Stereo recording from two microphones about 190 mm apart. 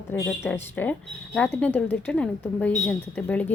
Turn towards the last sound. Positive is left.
turn(degrees=5)  # may be behind; listen again after turning